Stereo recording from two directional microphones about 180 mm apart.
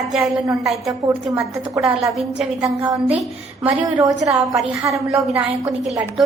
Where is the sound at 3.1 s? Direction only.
5° right (ahead or behind).